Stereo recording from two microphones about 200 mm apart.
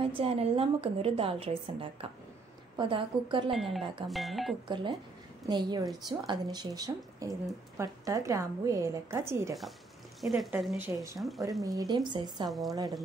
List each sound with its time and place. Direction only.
0.0 s a woman's voice: 30° right (ahead or behind)
3.5 s speech: centre (ahead or behind)
5.5 s a woman's voice: 20° right (ahead or behind)
10.2 s speech: centre (ahead or behind)
11.6 s a woman's voice: 15° right (ahead or behind)
12.4 s speech: centre (ahead or behind)